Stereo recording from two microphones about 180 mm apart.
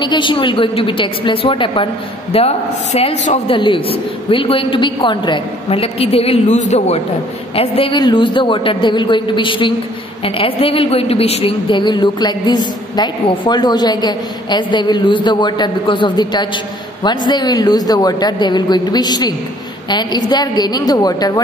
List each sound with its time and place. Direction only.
0.0 s a woman's voice: 25° left (ahead or behind)